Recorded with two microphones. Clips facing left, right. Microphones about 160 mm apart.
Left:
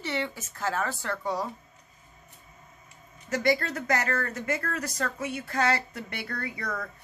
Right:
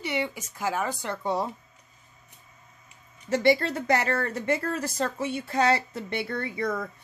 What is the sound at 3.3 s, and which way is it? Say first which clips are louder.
Speech: right 4 dB; 25° right (ahead or behind).